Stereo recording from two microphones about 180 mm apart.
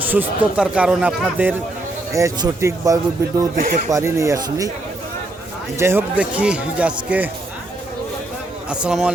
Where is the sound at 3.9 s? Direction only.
15° right (ahead or behind).